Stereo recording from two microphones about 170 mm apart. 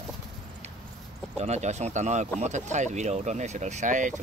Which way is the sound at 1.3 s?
40° right (ahead or behind).